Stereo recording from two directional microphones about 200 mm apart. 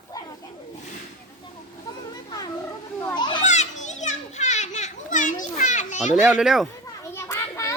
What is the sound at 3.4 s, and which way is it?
Children playing, 35° left (ahead or behind).